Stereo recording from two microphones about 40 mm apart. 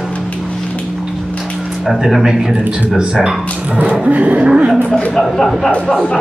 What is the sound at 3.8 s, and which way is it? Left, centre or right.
Speech, right.